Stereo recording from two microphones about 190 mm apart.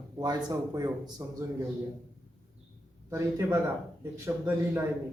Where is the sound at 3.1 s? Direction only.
10° right (ahead or behind).